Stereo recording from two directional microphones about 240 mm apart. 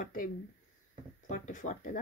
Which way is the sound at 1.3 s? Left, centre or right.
Left.